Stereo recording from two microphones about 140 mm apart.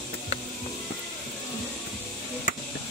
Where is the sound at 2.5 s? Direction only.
70° left (ahead or behind).